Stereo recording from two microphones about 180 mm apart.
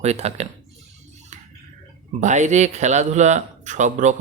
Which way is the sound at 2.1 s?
40° right (ahead or behind).